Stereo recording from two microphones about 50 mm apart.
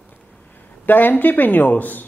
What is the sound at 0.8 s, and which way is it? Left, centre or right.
Speech, left.